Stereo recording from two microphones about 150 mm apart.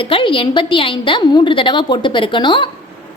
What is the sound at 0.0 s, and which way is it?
A woman's voice, 35° left (ahead or behind).